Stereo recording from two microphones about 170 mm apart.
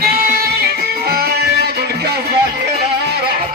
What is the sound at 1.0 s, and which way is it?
Music, 65° right (ahead or behind).